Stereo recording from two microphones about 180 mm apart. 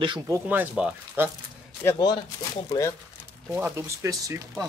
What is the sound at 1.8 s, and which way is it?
Speech, 25° left (ahead or behind).